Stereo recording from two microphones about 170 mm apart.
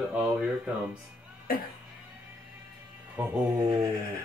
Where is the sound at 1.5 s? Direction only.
60° left (ahead or behind).